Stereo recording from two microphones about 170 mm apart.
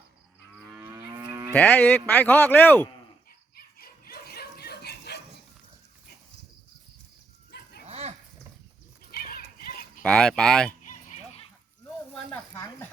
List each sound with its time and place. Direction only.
1.5 s speech: 10° left (ahead or behind)
3.5 s bow-wow: 60° left (ahead or behind)
7.5 s dog: 75° left (ahead or behind)
7.9 s livestock: 40° right (ahead or behind)
9.1 s a sound: 60° left (ahead or behind)
10.0 s speech: 5° left (ahead or behind)
12.1 s speech: 10° left (ahead or behind)